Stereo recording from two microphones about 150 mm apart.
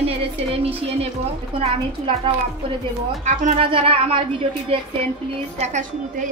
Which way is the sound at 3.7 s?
40° right (ahead or behind).